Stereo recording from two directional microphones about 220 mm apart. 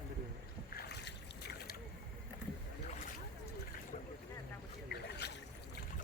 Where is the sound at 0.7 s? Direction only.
50° left (ahead or behind).